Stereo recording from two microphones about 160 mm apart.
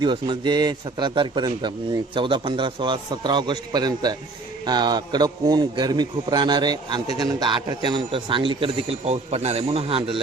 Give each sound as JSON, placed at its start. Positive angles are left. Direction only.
{"t": 0.0, "sound": "a man's voice", "side_deg": -30}